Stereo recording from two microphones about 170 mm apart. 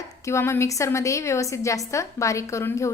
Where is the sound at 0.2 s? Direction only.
15° left (ahead or behind).